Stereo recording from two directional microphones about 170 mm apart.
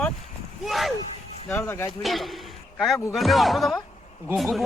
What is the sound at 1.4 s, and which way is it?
Speech, 15° left (ahead or behind).